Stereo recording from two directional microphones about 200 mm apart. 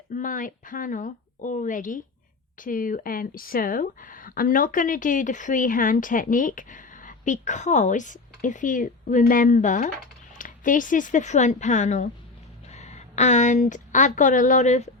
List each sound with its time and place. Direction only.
0.1 s a woman's voice: 40° left (ahead or behind)